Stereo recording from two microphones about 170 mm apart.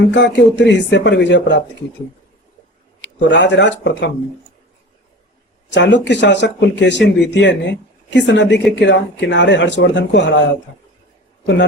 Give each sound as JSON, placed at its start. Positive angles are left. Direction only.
{"t": 0.1, "sound": "speech", "side_deg": 90}
{"t": 3.0, "sound": "speech", "side_deg": 90}
{"t": 5.7, "sound": "speech", "side_deg": 90}